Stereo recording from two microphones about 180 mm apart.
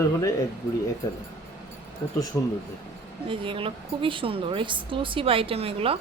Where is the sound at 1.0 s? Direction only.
20° left (ahead or behind).